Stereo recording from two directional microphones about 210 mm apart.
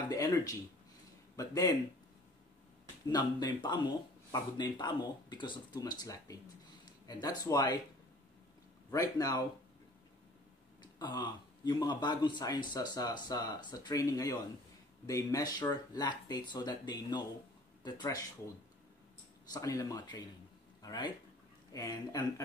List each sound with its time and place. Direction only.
0.1 s speech: 10° left (ahead or behind)
3.1 s speech: 20° left (ahead or behind)
8.9 s speech: 15° left (ahead or behind)
10.8 s speech: 20° left (ahead or behind)
19.5 s speech: 15° left (ahead or behind)